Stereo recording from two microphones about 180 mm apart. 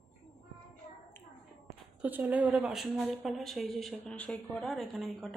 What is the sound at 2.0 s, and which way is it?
A woman's voice, 10° right (ahead or behind).